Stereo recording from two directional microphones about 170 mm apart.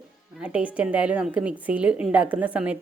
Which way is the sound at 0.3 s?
5° right (ahead or behind).